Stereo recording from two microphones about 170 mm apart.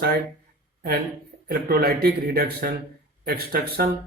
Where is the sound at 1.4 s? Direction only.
65° right (ahead or behind).